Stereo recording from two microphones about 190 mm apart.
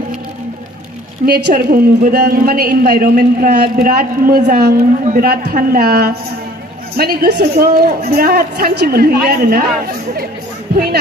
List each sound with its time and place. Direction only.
1.2 s a woman's voice: 55° right (ahead or behind)